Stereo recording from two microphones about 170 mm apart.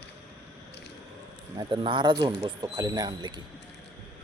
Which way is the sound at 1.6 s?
30° right (ahead or behind).